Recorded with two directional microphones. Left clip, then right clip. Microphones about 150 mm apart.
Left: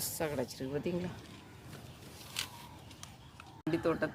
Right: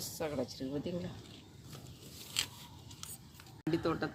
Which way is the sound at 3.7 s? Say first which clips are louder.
Left 2 dB; 25° left (ahead or behind).